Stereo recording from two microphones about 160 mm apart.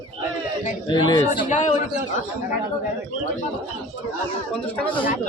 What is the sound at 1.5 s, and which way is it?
Speech, 50° left (ahead or behind).